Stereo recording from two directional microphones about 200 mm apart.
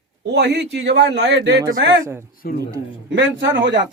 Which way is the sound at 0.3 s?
55° right (ahead or behind).